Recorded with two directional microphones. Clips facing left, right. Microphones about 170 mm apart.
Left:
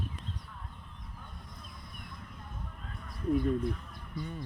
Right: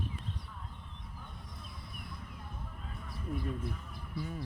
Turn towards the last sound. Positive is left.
turn(degrees=-5)  # may be behind; listen again after turning